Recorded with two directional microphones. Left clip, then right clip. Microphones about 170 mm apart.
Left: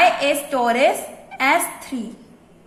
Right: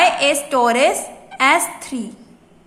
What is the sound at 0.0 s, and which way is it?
A woman's voice, 20° right (ahead or behind).